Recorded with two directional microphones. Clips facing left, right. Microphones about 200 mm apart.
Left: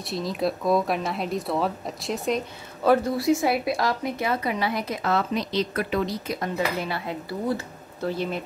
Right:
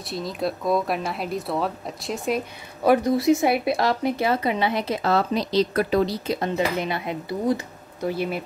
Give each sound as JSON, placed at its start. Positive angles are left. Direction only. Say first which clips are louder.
{"t": 0.1, "sound": "speech", "louder": "left 1 dB", "side_deg": 0}
{"t": 2.8, "sound": "speech", "louder": "right 2 dB", "side_deg": -15}